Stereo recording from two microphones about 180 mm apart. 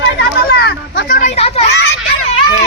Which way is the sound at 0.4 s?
60° left (ahead or behind).